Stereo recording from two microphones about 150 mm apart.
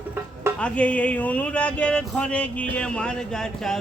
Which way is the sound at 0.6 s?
10° left (ahead or behind).